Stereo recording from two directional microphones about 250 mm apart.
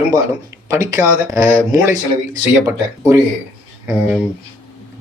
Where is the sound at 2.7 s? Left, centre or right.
Centre.